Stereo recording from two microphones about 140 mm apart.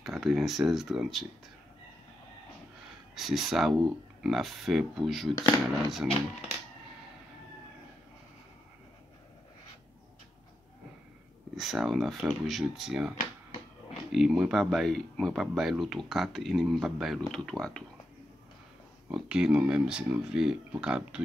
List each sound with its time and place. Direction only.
0.0 s speech: centre (ahead or behind)
3.2 s speech: centre (ahead or behind)
5.3 s speech: 30° left (ahead or behind)
11.5 s speech: centre (ahead or behind)
14.1 s speech: 5° right (ahead or behind)
19.0 s speech: 5° right (ahead or behind)